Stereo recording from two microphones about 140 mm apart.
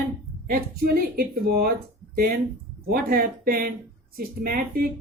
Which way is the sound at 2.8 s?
90° right.